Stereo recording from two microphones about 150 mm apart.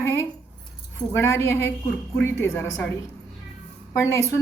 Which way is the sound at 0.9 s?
15° left (ahead or behind).